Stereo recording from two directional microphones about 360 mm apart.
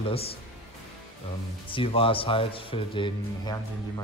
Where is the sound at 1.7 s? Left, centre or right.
Centre.